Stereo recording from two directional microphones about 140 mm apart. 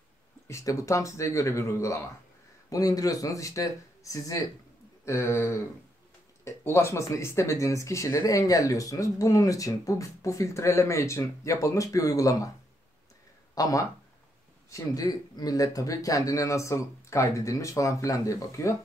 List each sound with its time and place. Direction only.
0.5 s speech: 20° left (ahead or behind)
13.6 s speech: 25° left (ahead or behind)